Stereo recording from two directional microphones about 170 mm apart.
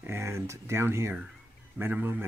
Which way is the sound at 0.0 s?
15° right (ahead or behind).